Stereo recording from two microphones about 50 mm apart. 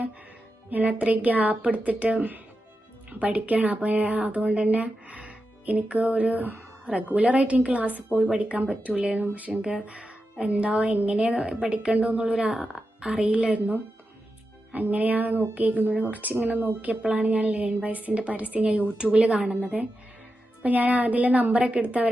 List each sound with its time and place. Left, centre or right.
0.7 s a woman's voice: right
17.0 s a woman's voice: right
20.6 s a woman's voice: right